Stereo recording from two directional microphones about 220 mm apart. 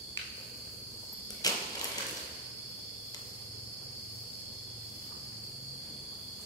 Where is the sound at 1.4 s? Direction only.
15° left (ahead or behind).